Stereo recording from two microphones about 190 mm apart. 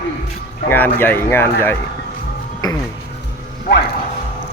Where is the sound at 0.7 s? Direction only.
10° left (ahead or behind).